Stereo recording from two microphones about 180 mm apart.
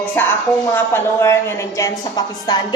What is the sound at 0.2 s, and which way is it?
A woman's voice, 10° left (ahead or behind).